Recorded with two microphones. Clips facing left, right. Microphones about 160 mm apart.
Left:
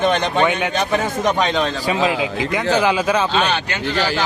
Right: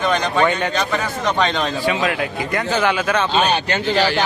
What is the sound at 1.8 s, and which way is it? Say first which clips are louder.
Speech: left 1 dB; 30° left (ahead or behind).